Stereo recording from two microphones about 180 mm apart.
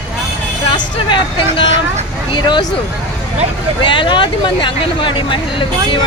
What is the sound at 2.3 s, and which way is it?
Speech, 25° left (ahead or behind).